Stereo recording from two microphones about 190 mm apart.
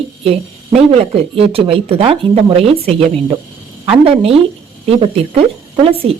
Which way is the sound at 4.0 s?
30° right (ahead or behind).